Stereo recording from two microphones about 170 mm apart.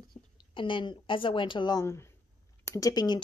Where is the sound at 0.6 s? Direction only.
30° left (ahead or behind).